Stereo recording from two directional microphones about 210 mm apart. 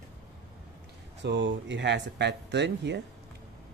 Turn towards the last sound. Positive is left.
turn(degrees=-55)  # may be behind; listen again after turning